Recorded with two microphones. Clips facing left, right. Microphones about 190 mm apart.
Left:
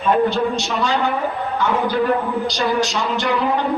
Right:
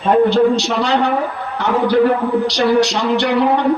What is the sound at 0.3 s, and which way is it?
A man's voice, 70° right (ahead or behind).